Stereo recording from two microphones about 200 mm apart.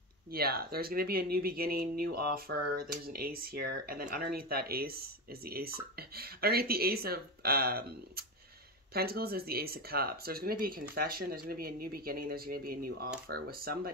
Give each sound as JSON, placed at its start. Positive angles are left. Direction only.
{"t": 0.3, "sound": "speech", "side_deg": -50}